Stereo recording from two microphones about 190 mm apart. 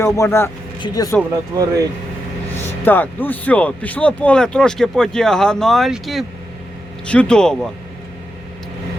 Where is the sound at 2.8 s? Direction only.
10° left (ahead or behind).